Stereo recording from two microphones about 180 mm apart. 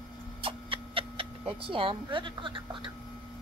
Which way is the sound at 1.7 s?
30° right (ahead or behind).